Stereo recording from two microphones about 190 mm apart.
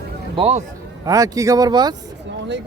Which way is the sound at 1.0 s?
15° right (ahead or behind).